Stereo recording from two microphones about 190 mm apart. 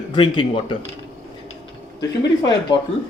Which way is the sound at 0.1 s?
25° left (ahead or behind).